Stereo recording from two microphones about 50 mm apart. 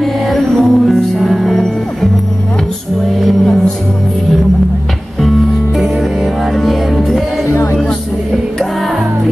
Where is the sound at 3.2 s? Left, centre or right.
Centre.